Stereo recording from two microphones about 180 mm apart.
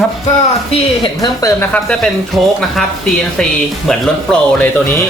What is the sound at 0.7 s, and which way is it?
Speech, 25° left (ahead or behind).